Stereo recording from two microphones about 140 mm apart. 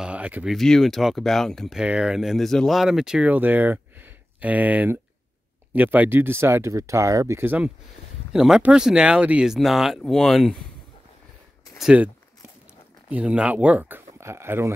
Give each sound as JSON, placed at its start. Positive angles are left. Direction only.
{"t": 0.0, "sound": "speech", "side_deg": -10}
{"t": 11.8, "sound": "speech", "side_deg": -10}
{"t": 13.1, "sound": "speech", "side_deg": -10}